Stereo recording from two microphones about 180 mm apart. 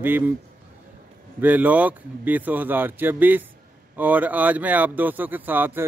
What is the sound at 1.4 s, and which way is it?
A man's voice, 10° right (ahead or behind).